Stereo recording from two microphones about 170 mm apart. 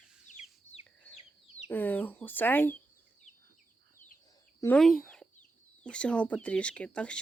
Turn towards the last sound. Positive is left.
turn(degrees=5)  # may be behind; listen again after turning